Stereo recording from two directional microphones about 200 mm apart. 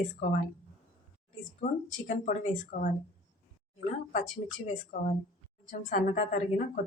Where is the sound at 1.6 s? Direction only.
40° left (ahead or behind).